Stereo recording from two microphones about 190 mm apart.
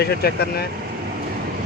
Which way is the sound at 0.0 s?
55° left (ahead or behind).